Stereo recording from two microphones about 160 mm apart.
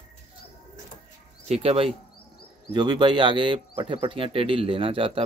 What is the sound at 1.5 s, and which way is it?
Speech, 40° right (ahead or behind).